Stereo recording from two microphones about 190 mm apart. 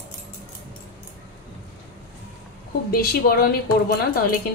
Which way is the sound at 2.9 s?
55° left (ahead or behind).